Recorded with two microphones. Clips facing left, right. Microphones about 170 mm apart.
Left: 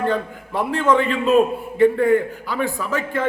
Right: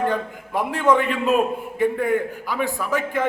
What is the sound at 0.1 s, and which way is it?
A man's voice, 10° right (ahead or behind).